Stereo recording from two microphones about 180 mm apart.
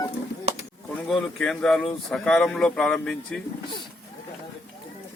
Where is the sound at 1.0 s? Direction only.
Centre (ahead or behind).